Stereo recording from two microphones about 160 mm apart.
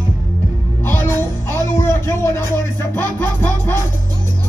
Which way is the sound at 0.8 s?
15° left (ahead or behind).